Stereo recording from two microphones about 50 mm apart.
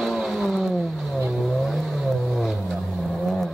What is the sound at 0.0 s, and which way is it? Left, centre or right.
Vehicle, centre.